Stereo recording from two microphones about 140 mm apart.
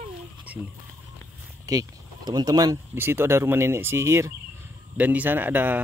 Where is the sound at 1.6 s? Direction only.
25° right (ahead or behind).